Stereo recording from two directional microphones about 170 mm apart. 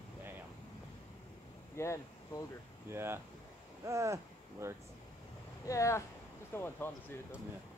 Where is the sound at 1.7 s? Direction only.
15° left (ahead or behind).